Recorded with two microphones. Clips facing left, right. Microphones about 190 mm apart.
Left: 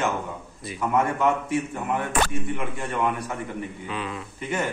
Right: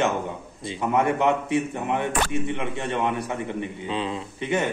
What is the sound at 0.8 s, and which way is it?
A man's voice, 25° right (ahead or behind).